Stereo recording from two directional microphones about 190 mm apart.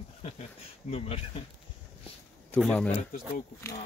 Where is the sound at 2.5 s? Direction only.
5° left (ahead or behind).